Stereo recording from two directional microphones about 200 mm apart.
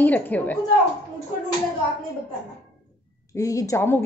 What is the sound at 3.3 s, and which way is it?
Speech, 15° left (ahead or behind).